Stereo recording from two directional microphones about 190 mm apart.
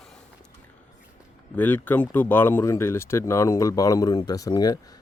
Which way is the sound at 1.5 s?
10° left (ahead or behind).